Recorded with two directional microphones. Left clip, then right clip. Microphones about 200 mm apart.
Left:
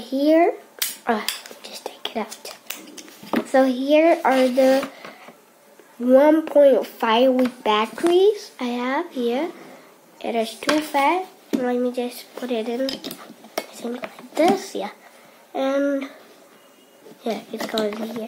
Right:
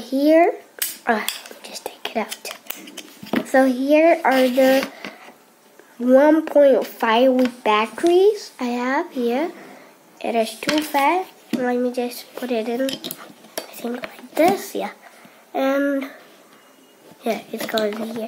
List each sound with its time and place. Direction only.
0.0 s speech: centre (ahead or behind)
0.7 s dishes: centre (ahead or behind)
1.8 s whispering: centre (ahead or behind)
3.5 s speech: centre (ahead or behind)
6.0 s speech: centre (ahead or behind)
17.2 s speech: 5° right (ahead or behind)